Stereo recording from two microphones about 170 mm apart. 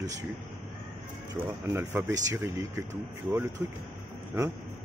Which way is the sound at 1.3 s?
10° right (ahead or behind).